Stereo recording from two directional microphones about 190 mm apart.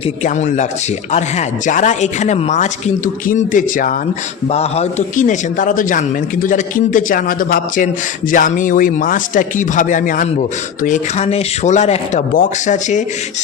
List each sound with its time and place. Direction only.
0.3 s speech: 40° left (ahead or behind)
4.5 s a man's voice: 35° left (ahead or behind)